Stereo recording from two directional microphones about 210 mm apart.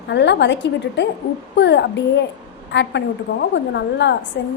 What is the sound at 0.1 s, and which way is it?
A woman's voice, 55° left (ahead or behind).